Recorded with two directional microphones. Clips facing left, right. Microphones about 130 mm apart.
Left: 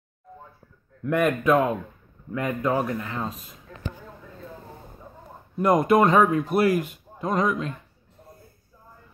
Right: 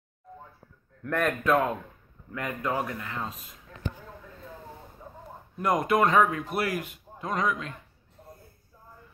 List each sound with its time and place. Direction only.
1.0 s speech: 10° left (ahead or behind)
2.3 s speech: 25° left (ahead or behind)
5.6 s a man's voice: 30° left (ahead or behind)